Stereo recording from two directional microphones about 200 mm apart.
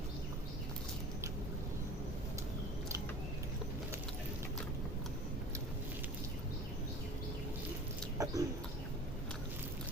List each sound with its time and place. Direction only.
8.2 s bird: 15° right (ahead or behind)